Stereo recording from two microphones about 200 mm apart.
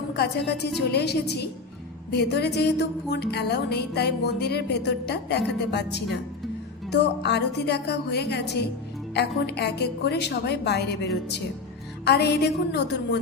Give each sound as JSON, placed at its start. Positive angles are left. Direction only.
{"t": 0.2, "sound": "music", "side_deg": 55}